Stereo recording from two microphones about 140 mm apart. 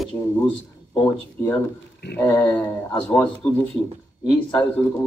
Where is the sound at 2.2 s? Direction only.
15° left (ahead or behind).